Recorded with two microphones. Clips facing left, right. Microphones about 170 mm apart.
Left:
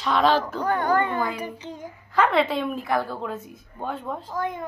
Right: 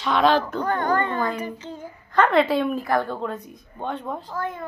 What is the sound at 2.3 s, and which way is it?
A woman's voice, centre (ahead or behind).